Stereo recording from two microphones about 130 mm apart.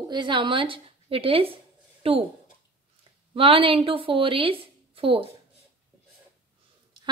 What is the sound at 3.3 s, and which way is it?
A woman's voice, 45° right (ahead or behind).